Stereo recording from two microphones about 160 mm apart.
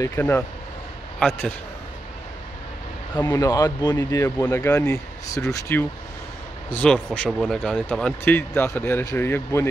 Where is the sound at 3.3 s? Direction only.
25° left (ahead or behind).